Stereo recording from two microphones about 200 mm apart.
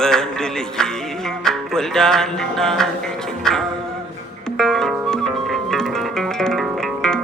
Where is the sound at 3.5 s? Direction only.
5° left (ahead or behind).